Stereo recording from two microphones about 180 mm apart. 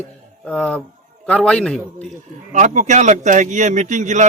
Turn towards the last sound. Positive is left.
turn(degrees=-40)  # may be behind; listen again after turning